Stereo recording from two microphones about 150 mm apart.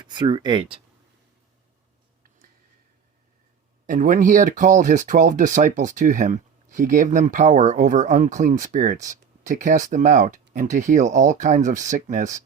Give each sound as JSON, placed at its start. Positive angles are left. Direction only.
{"t": 0.0, "sound": "speech", "side_deg": -30}
{"t": 3.8, "sound": "speech", "side_deg": -60}